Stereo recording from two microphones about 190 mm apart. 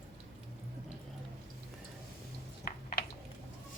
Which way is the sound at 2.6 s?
50° left (ahead or behind).